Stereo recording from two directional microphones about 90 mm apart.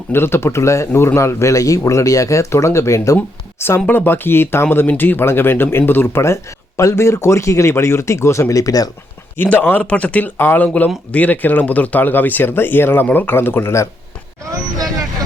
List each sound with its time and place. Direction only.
0.1 s speech: 25° left (ahead or behind)
3.2 s a sound: 25° left (ahead or behind)
3.8 s speech: 20° left (ahead or behind); by 8.9 s 40° left (ahead or behind)
9.4 s speech: 20° left (ahead or behind)
14.4 s speech: 40° right (ahead or behind)